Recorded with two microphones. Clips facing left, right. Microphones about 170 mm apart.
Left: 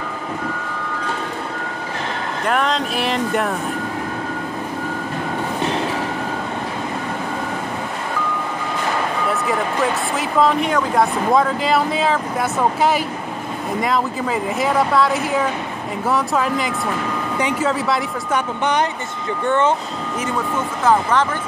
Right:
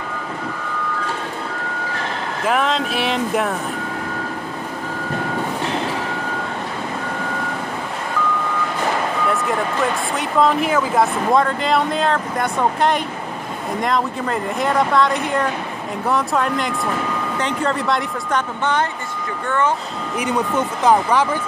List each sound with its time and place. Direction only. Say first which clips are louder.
2.4 s speech: right 1 dB; centre (ahead or behind)
9.3 s speech: even; centre (ahead or behind)
18.6 s speech: left 1 dB; 15° left (ahead or behind)
20.2 s speech: right 3 dB; 15° right (ahead or behind)